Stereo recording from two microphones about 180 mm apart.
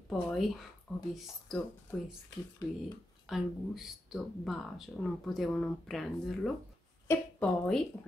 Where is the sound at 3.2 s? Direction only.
Centre (ahead or behind).